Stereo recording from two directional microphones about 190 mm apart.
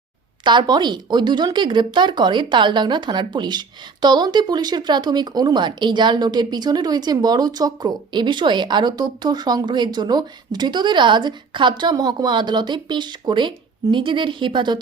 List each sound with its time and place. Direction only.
0.4 s speech: 25° right (ahead or behind)